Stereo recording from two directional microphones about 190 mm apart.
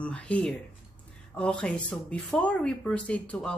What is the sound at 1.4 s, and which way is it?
Speech, 5° left (ahead or behind).